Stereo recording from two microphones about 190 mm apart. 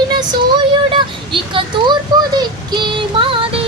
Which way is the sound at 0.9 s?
25° right (ahead or behind).